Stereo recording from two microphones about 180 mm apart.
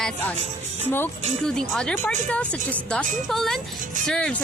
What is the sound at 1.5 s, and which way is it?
A woman's voice, 5° left (ahead or behind).